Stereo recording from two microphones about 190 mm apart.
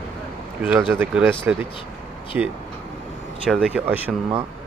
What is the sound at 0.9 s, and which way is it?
Speech, 5° right (ahead or behind).